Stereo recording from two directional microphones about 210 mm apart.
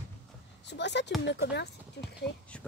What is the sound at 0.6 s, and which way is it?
Speech, 55° left (ahead or behind).